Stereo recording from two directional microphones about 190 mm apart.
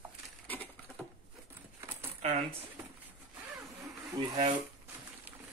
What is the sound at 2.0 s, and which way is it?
Speech, 30° right (ahead or behind).